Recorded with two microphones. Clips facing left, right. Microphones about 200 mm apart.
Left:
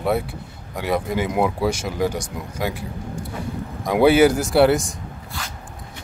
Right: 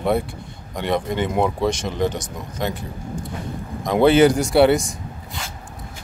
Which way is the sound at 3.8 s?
10° left (ahead or behind).